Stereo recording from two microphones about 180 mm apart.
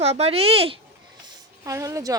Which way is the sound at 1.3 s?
20° right (ahead or behind).